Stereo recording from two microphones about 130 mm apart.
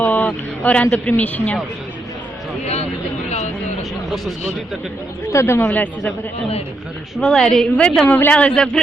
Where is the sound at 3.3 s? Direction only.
60° left (ahead or behind).